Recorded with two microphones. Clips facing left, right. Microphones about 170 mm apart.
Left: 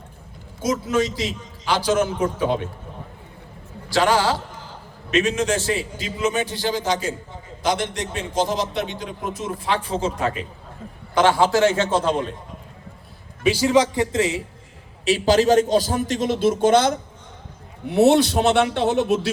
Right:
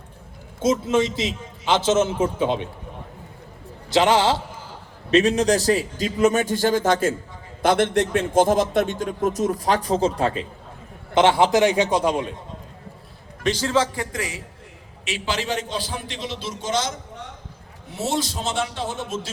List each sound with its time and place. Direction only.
0.6 s a man's voice: 25° right (ahead or behind)
3.8 s a man's voice: 20° right (ahead or behind)
5.1 s a man's voice: 35° right (ahead or behind)
9.8 s a man's voice: 35° right (ahead or behind)
11.1 s a man's voice: 20° right (ahead or behind)
13.4 s a man's voice: 10° left (ahead or behind)
15.0 s a man's voice: 40° left (ahead or behind); by 19.3 s 70° left (ahead or behind)